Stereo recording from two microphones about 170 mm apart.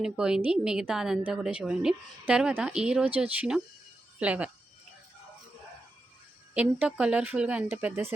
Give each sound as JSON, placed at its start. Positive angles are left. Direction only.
{"t": 0.0, "sound": "a woman's voice", "side_deg": -5}
{"t": 6.5, "sound": "speech", "side_deg": -10}